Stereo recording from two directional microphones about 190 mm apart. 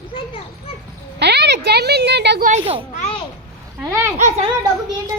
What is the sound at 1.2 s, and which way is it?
Speech, 60° right (ahead or behind).